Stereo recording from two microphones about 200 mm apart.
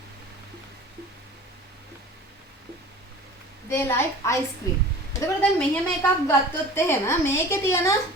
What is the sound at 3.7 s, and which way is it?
A woman's voice, 15° left (ahead or behind).